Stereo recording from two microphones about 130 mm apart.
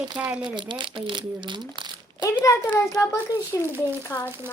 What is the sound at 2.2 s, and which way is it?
A child's voice, 25° left (ahead or behind).